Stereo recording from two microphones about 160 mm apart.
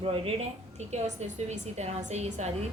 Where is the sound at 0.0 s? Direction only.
40° right (ahead or behind).